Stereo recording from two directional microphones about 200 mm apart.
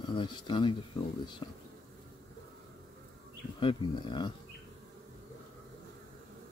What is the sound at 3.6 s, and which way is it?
Speech, 25° left (ahead or behind).